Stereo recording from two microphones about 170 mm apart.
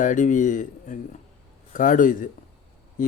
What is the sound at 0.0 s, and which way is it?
A man's voice, 50° left (ahead or behind).